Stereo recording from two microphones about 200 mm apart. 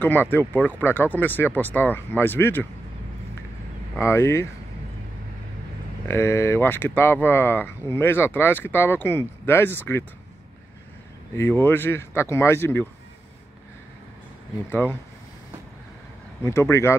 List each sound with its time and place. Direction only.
0.0 s speech: 10° left (ahead or behind)
4.0 s speech: 15° left (ahead or behind)
6.0 s speech: 15° left (ahead or behind)
11.3 s speech: 10° left (ahead or behind)
14.7 s speech: 10° left (ahead or behind)
16.4 s speech: 15° left (ahead or behind)